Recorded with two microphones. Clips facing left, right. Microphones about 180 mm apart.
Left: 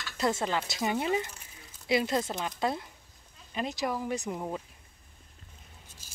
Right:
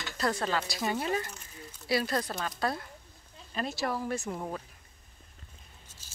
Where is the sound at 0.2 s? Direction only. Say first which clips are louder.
Left 1 dB; 20° left (ahead or behind).